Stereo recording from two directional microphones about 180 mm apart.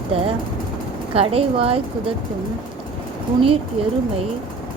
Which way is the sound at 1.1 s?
35° right (ahead or behind).